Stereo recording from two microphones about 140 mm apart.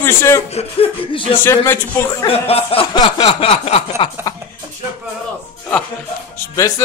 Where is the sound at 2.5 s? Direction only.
45° left (ahead or behind).